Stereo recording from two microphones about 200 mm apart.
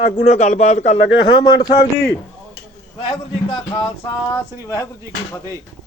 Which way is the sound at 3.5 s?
25° left (ahead or behind).